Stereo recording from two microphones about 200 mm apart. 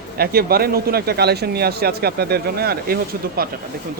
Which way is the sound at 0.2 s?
50° right (ahead or behind).